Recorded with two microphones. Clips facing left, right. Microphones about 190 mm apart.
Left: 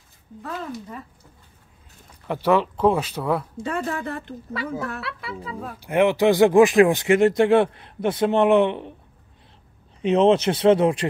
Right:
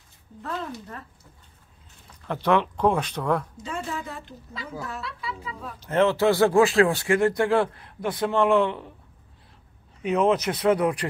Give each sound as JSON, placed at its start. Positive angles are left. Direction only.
{"t": 0.4, "sound": "speech", "side_deg": 10}
{"t": 2.2, "sound": "speech", "side_deg": 10}
{"t": 3.6, "sound": "a woman's voice", "side_deg": 60}
{"t": 5.8, "sound": "speech", "side_deg": 15}
{"t": 10.0, "sound": "speech", "side_deg": 25}